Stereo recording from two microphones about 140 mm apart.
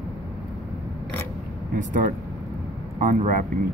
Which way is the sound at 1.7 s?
65° right (ahead or behind).